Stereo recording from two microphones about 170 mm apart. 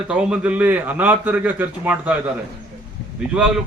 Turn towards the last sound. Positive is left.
turn(degrees=-5)  # may be behind; listen again after turning